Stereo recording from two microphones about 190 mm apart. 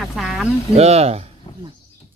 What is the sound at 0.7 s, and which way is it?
Speech, 35° right (ahead or behind).